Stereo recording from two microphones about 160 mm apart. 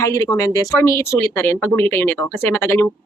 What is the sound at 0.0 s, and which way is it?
Speech, 20° left (ahead or behind).